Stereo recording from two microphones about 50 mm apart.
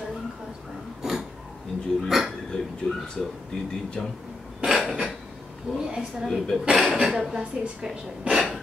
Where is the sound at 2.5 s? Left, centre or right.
Centre.